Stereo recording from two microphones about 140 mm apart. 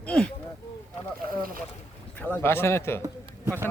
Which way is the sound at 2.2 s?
15° left (ahead or behind).